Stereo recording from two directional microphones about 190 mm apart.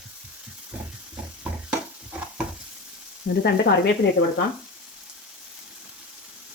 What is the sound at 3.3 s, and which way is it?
Sizzle, 55° left (ahead or behind).